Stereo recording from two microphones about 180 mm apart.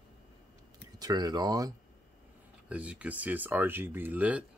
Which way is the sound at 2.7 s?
5° right (ahead or behind).